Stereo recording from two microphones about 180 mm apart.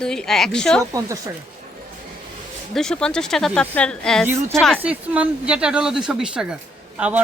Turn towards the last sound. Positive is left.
turn(degrees=-5)  # may be behind; listen again after turning